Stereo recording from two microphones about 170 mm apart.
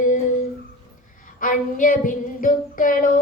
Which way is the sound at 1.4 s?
50° left (ahead or behind).